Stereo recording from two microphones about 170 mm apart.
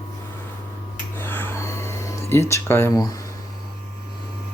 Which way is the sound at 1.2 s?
10° left (ahead or behind).